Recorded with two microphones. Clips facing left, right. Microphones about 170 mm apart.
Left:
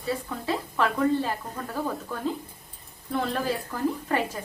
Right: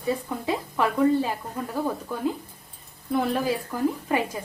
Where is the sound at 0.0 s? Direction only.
15° right (ahead or behind).